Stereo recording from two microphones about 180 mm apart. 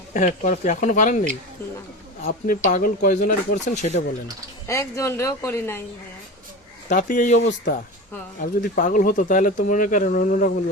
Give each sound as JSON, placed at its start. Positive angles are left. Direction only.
{"t": 0.1, "sound": "speech", "side_deg": 45}
{"t": 2.2, "sound": "speech", "side_deg": 45}
{"t": 4.7, "sound": "speech", "side_deg": 15}
{"t": 6.9, "sound": "speech", "side_deg": 45}